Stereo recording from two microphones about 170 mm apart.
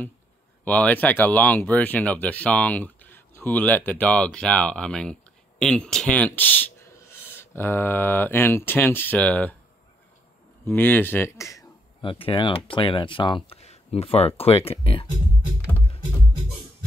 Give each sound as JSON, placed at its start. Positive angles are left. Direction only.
{"t": 0.7, "sound": "speech", "side_deg": 10}
{"t": 10.6, "sound": "speech", "side_deg": 10}
{"t": 12.0, "sound": "speech", "side_deg": 30}